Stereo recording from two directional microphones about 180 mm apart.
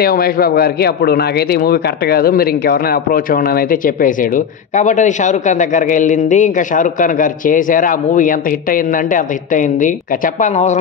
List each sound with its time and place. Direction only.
0.0 s a man's voice: 55° left (ahead or behind)